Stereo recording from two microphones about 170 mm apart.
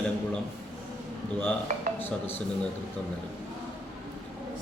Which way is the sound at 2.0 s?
10° left (ahead or behind).